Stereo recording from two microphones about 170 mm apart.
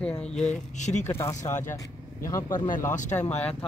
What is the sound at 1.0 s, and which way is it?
Speech, 15° left (ahead or behind).